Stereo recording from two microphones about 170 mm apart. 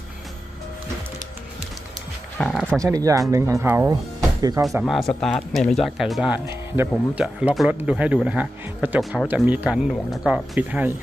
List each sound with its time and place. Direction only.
2.4 s speech: centre (ahead or behind)
2.8 s speech: 20° right (ahead or behind)
4.8 s speech: centre (ahead or behind)
6.4 s a man's voice: 15° right (ahead or behind)
6.9 s speech: 5° right (ahead or behind)